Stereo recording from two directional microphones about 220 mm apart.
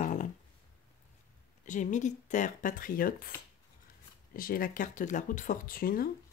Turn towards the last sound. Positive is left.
turn(degrees=40)  # may be behind; listen again after turning